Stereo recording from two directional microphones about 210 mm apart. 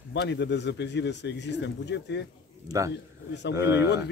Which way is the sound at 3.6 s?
15° right (ahead or behind).